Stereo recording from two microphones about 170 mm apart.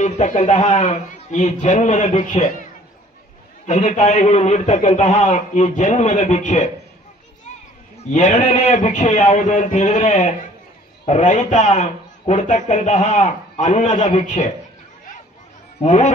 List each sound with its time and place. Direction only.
0.0 s a man's voice: 45° left (ahead or behind)
3.6 s a man's voice: 45° left (ahead or behind)
8.0 s a man's voice: 45° left (ahead or behind)
15.8 s a man's voice: 45° left (ahead or behind)